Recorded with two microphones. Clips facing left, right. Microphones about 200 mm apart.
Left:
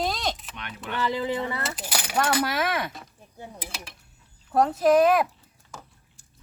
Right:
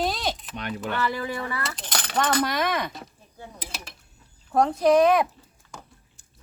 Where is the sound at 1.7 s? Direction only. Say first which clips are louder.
Left 1 dB; 5° left (ahead or behind).